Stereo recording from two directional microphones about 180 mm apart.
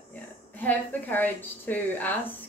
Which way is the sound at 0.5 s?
10° left (ahead or behind).